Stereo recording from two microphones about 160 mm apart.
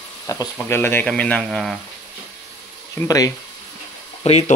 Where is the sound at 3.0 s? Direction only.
20° left (ahead or behind).